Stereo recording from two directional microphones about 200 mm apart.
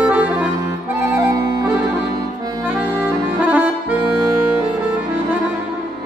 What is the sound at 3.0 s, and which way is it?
Accordion, 10° right (ahead or behind).